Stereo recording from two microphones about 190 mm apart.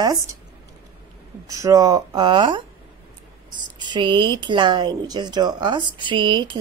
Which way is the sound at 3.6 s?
25° right (ahead or behind).